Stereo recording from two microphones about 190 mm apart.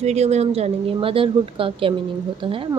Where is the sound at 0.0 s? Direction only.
35° right (ahead or behind).